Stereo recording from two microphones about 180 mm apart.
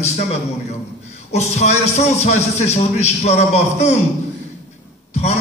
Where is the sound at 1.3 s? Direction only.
40° left (ahead or behind).